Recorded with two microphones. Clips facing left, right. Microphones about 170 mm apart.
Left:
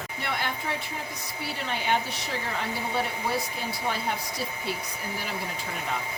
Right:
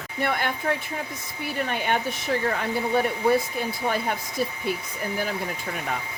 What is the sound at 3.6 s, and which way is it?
Speech, 55° right (ahead or behind).